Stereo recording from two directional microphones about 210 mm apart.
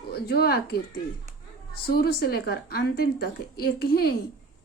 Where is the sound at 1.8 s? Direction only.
45° left (ahead or behind).